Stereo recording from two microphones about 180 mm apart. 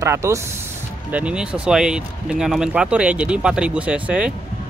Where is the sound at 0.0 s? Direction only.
15° right (ahead or behind).